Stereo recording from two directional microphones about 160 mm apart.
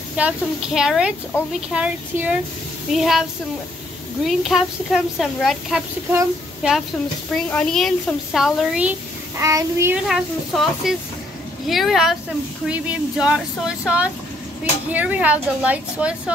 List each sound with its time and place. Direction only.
0.2 s a child's voice: 5° right (ahead or behind)
7.4 s a child's voice: 5° left (ahead or behind)
9.4 s child singing: 20° right (ahead or behind)
10.0 s a child's voice: centre (ahead or behind)